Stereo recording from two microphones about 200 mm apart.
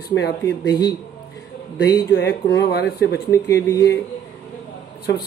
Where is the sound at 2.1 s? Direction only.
60° left (ahead or behind).